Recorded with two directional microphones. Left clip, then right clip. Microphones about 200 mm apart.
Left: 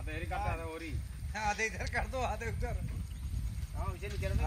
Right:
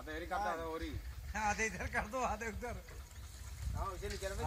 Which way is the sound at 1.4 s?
30° left (ahead or behind).